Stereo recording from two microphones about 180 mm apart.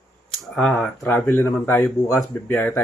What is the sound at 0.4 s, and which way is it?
Speech, centre (ahead or behind).